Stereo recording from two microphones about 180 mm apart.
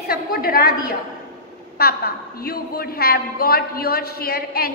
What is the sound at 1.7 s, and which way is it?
A woman's voice, 60° left (ahead or behind).